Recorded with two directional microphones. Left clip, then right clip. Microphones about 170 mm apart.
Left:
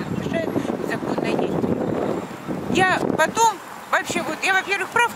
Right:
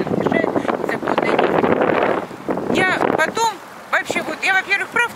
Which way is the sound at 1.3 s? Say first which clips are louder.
Right 9 dB; 25° right (ahead or behind).